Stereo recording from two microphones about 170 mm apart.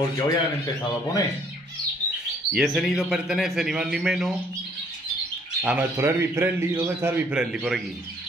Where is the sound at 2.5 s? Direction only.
Centre (ahead or behind).